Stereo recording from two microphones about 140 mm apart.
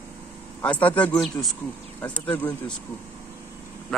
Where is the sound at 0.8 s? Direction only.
10° left (ahead or behind).